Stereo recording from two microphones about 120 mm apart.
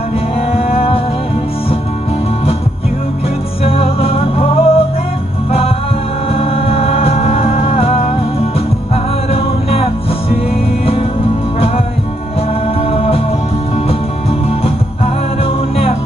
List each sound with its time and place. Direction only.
0.5 s music: 55° left (ahead or behind)
3.6 s music: 55° left (ahead or behind)
6.3 s music: 55° left (ahead or behind)
9.3 s music: 55° left (ahead or behind)
12.9 s music: 55° left (ahead or behind)